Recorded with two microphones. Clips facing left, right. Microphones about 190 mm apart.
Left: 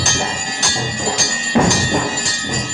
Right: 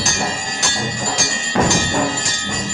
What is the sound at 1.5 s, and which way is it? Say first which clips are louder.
Music: left 3 dB; 20° left (ahead or behind).